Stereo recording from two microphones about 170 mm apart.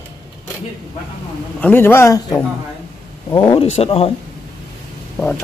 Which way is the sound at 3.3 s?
30° left (ahead or behind).